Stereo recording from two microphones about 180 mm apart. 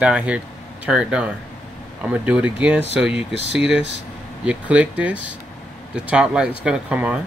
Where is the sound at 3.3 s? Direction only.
75° right (ahead or behind).